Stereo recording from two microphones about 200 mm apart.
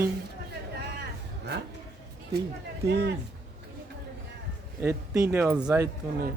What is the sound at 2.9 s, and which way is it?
Speech, 55° right (ahead or behind).